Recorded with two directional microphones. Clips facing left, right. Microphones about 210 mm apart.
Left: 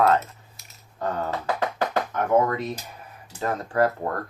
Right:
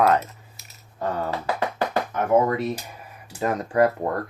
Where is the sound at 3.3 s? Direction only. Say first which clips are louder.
Right 3 dB; 15° right (ahead or behind).